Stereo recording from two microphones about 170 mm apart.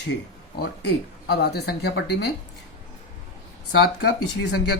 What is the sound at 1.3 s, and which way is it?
Speech, 70° left (ahead or behind).